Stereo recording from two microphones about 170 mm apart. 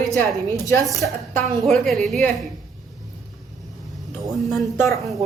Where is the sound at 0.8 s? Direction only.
Centre (ahead or behind).